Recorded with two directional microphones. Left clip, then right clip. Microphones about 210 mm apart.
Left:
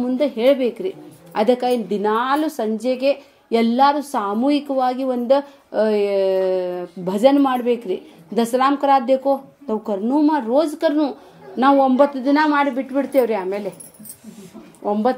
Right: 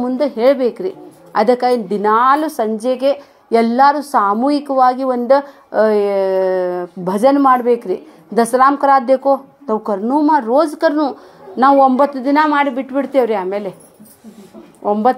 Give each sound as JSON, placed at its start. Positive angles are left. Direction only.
{"t": 0.0, "sound": "a woman's voice", "side_deg": -15}
{"t": 0.6, "sound": "a woman's voice", "side_deg": 5}
{"t": 1.3, "sound": "a woman's voice", "side_deg": -15}
{"t": 14.8, "sound": "speech", "side_deg": -20}